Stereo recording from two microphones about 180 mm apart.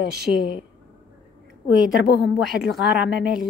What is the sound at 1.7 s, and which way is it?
Speech, centre (ahead or behind).